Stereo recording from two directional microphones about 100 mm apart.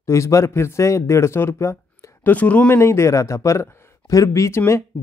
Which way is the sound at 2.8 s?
30° left (ahead or behind).